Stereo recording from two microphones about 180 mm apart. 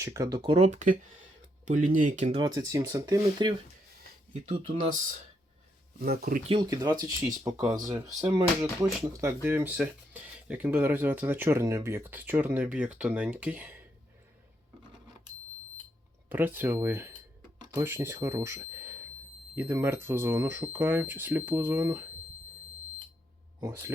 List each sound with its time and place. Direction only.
0.0 s speech: 15° right (ahead or behind); by 2.4 s 40° right (ahead or behind)
2.4 s speech: 20° right (ahead or behind)
4.7 s speech: 45° right (ahead or behind)
6.0 s speech: 55° right (ahead or behind)
6.5 s speech: 20° right (ahead or behind)
16.3 s speech: 10° right (ahead or behind)
23.6 s speech: 20° right (ahead or behind)